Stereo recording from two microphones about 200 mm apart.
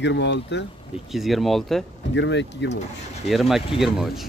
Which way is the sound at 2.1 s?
60° left (ahead or behind).